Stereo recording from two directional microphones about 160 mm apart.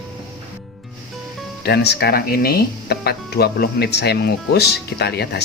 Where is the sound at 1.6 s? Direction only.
90° left.